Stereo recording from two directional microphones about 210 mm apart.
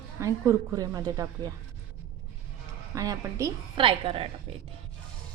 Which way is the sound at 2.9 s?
15° right (ahead or behind).